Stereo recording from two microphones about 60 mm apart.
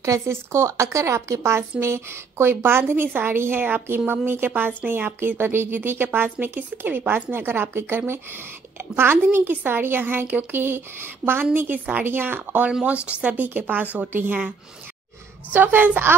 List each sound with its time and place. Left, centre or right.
0.0 s a woman's voice: right
15.5 s a woman's voice: right